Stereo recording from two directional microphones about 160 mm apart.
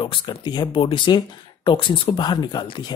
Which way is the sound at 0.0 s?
30° left (ahead or behind).